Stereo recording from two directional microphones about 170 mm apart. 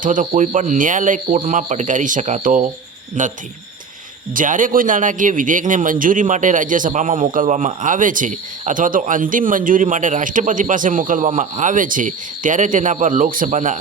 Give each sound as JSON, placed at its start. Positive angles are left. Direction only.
{"t": 0.0, "sound": "a man's voice", "side_deg": -50}
{"t": 4.4, "sound": "a man's voice", "side_deg": -50}